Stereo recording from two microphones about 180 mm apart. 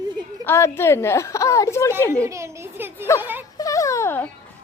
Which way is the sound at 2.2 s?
15° right (ahead or behind).